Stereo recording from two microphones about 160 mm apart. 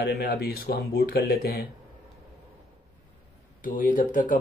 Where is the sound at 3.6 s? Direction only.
55° left (ahead or behind).